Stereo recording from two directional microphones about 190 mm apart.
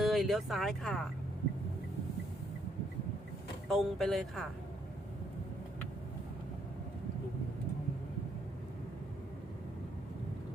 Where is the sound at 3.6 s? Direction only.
Centre (ahead or behind).